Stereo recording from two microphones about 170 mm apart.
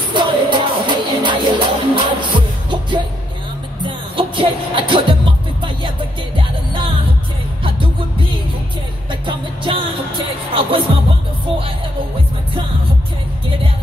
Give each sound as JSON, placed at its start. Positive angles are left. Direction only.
{"t": 0.1, "sound": "music", "side_deg": -30}